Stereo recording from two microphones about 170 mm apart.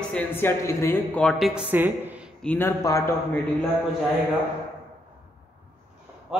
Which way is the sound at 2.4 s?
15° left (ahead or behind).